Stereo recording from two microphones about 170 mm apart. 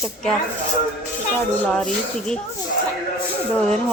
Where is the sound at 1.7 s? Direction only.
5° left (ahead or behind).